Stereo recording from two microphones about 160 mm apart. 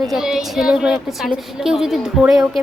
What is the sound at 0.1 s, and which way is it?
A woman's voice, 5° right (ahead or behind).